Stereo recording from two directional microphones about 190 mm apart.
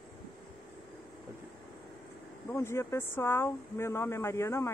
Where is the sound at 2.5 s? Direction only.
15° left (ahead or behind).